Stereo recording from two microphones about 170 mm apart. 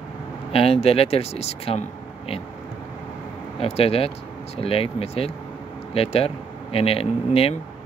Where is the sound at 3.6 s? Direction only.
35° left (ahead or behind).